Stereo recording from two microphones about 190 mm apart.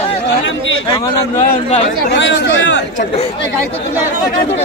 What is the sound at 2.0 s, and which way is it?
Speech, 65° left (ahead or behind).